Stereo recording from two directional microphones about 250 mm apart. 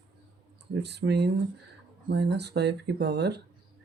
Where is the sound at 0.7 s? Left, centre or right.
Right.